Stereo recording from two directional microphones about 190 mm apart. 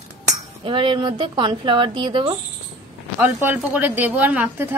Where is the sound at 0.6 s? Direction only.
25° right (ahead or behind).